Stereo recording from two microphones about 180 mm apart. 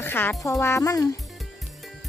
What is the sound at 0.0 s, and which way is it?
Speech, 10° left (ahead or behind).